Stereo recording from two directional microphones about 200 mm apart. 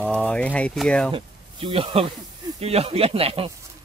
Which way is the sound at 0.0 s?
5° left (ahead or behind).